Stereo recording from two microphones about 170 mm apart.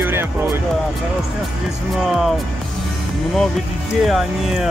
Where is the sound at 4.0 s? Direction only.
Centre (ahead or behind).